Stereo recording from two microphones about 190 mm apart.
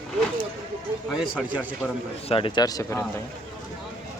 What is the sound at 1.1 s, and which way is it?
Speech, 5° right (ahead or behind).